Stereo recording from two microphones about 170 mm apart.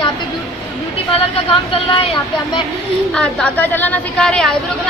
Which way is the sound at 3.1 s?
5° left (ahead or behind).